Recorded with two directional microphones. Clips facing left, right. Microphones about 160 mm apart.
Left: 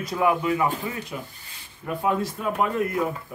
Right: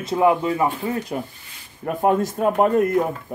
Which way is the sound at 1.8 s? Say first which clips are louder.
Right 5 dB; 50° right (ahead or behind).